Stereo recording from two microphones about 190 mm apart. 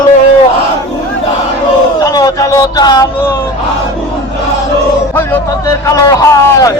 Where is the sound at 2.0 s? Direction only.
20° left (ahead or behind).